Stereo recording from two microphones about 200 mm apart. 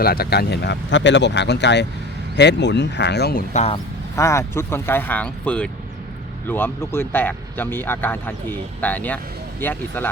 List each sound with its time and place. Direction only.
0.0 s speech: 50° left (ahead or behind)
3.5 s speech: 30° left (ahead or behind)
4.1 s speech: 15° left (ahead or behind)